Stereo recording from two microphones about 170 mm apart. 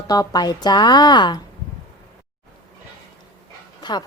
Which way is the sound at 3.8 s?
25° left (ahead or behind).